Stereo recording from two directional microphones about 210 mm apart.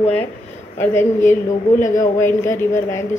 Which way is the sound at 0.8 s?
10° left (ahead or behind).